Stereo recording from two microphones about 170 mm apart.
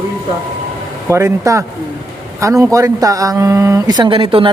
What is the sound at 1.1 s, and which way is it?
Speech, 15° right (ahead or behind).